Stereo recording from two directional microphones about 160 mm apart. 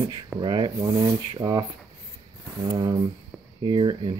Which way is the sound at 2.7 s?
25° right (ahead or behind).